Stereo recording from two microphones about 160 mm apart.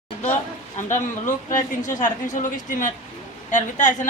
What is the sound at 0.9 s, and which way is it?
A woman's voice, 50° left (ahead or behind).